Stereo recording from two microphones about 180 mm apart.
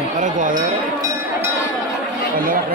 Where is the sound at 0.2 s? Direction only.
45° right (ahead or behind).